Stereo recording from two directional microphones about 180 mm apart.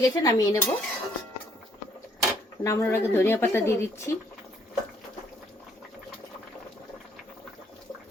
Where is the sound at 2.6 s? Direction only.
15° left (ahead or behind).